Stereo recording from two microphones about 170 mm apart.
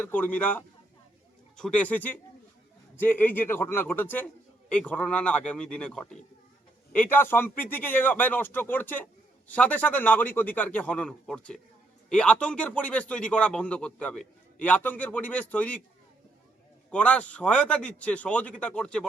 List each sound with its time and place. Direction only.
0.0 s a man's voice: 10° left (ahead or behind)
16.9 s a man's voice: 10° left (ahead or behind)